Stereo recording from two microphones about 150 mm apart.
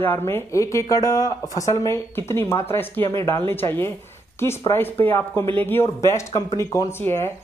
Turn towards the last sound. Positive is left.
turn(degrees=15)  # may be behind; listen again after turning